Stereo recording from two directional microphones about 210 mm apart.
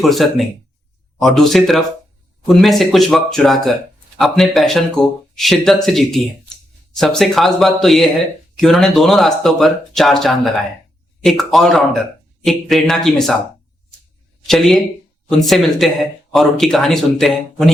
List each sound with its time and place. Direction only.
0.0 s speech: centre (ahead or behind)
14.4 s speech: centre (ahead or behind)